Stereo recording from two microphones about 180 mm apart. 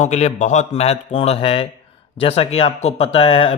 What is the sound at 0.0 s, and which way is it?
Speech, 40° left (ahead or behind).